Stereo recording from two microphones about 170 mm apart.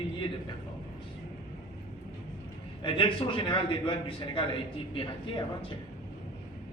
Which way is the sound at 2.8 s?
30° left (ahead or behind).